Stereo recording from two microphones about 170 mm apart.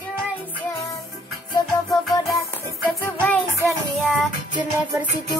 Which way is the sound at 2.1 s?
20° left (ahead or behind).